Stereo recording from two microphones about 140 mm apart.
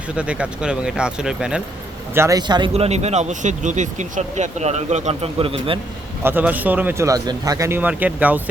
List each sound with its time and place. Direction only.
0.2 s speech: 10° right (ahead or behind)
2.1 s a man's voice: 25° right (ahead or behind)
2.7 s speech: 50° right (ahead or behind)
6.2 s speech: 15° right (ahead or behind)
7.8 s speech: 10° right (ahead or behind)